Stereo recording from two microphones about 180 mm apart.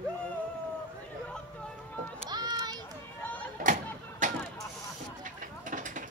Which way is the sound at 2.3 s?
25° right (ahead or behind).